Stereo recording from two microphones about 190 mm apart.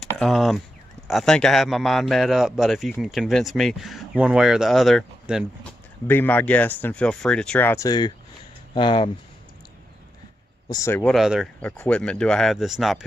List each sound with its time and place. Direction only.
0.0 s a man's voice: centre (ahead or behind)
6.0 s speech: 10° left (ahead or behind)
10.7 s speech: 15° left (ahead or behind)
11.0 s a man's voice: centre (ahead or behind)